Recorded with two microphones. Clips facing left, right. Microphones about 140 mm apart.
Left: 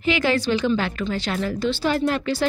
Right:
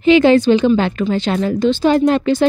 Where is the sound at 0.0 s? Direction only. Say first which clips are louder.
Right 11 dB; 25° right (ahead or behind).